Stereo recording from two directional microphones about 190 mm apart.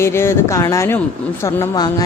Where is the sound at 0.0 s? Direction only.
15° left (ahead or behind).